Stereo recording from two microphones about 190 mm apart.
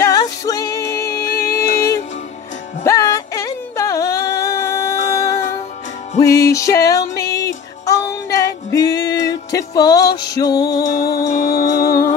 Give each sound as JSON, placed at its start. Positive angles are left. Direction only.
{"t": 0.0, "sound": "music", "side_deg": 20}
{"t": 2.8, "sound": "a sound", "side_deg": 15}
{"t": 6.1, "sound": "music", "side_deg": 15}
{"t": 10.9, "sound": "music", "side_deg": 55}
{"t": 11.9, "sound": "music", "side_deg": 15}